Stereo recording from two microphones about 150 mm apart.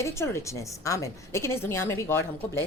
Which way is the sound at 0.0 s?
20° left (ahead or behind).